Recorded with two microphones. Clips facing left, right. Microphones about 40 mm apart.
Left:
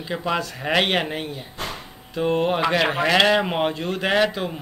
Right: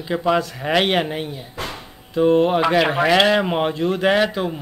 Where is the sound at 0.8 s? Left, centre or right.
Left.